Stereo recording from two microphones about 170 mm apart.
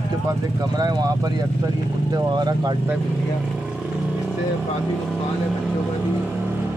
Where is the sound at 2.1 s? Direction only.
25° right (ahead or behind).